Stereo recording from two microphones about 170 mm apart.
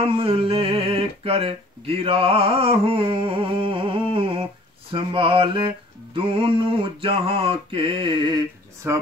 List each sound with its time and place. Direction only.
0.0 s speech: 35° right (ahead or behind)